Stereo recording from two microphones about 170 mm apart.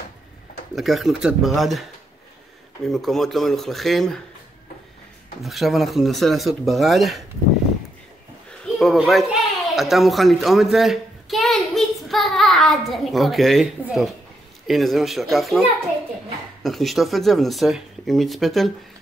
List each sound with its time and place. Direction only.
0.7 s speech: centre (ahead or behind)
2.9 s speech: centre (ahead or behind)
5.4 s speech: centre (ahead or behind)
8.5 s speech: 5° left (ahead or behind)
16.6 s speech: centre (ahead or behind)